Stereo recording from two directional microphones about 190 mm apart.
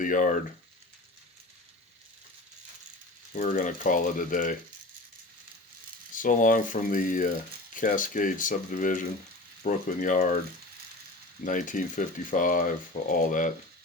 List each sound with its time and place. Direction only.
0.0 s speech: 45° left (ahead or behind)
3.3 s speech: 40° left (ahead or behind)
6.1 s speech: 45° left (ahead or behind)
11.4 s speech: 45° left (ahead or behind)